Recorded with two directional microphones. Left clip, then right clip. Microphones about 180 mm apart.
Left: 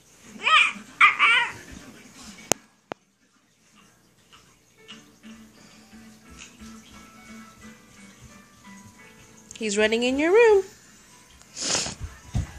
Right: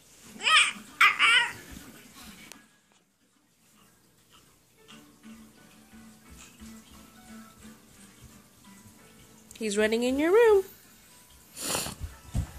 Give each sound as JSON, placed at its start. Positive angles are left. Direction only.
{"t": 0.4, "sound": "babbling", "side_deg": -20}
{"t": 9.5, "sound": "speech", "side_deg": 0}
{"t": 11.5, "sound": "a sound", "side_deg": -5}